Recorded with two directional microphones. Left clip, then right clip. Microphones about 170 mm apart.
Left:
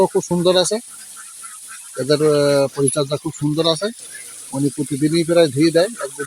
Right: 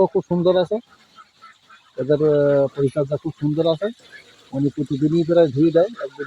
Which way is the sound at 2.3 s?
35° left (ahead or behind).